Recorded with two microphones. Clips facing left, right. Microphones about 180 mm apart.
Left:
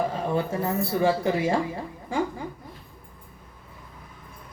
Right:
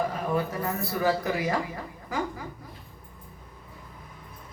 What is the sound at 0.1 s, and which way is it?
Speech, 25° left (ahead or behind).